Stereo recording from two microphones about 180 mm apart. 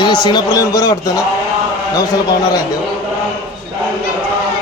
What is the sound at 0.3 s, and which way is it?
Speech, 20° left (ahead or behind).